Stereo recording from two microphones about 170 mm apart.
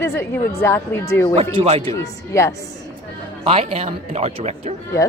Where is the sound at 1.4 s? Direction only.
35° right (ahead or behind).